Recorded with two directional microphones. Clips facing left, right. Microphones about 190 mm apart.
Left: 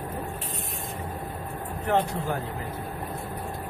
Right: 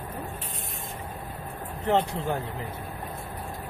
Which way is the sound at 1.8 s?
25° right (ahead or behind).